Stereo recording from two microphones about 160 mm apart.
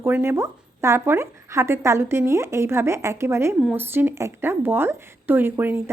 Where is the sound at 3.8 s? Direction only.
15° right (ahead or behind).